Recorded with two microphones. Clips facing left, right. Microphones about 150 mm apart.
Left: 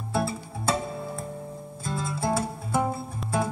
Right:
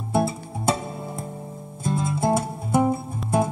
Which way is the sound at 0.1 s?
20° right (ahead or behind).